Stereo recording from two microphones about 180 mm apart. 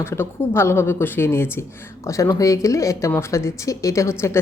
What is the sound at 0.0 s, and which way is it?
Speech, 15° left (ahead or behind).